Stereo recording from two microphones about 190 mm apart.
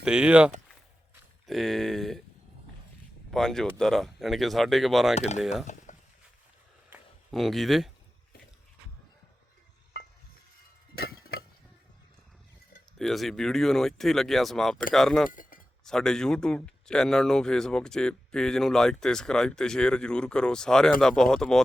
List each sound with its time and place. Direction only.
0.0 s speech: 5° right (ahead or behind)
3.3 s speech: 5° left (ahead or behind)
5.1 s speech: 35° left (ahead or behind)
5.4 s speech: centre (ahead or behind)
5.6 s a sound: 40° left (ahead or behind)
7.3 s speech: centre (ahead or behind)
13.0 s speech: centre (ahead or behind)
15.3 s chink: 45° left (ahead or behind)
15.8 s speech: 5° left (ahead or behind)